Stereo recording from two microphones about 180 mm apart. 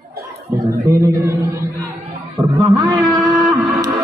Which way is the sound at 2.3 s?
20° right (ahead or behind).